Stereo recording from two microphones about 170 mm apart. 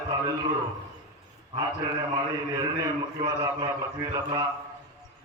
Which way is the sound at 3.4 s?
20° right (ahead or behind).